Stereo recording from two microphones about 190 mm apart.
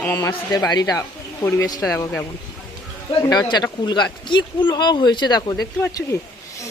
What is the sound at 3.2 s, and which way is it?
Speech, 20° left (ahead or behind).